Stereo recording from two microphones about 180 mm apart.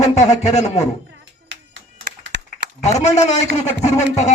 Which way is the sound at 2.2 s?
80° right.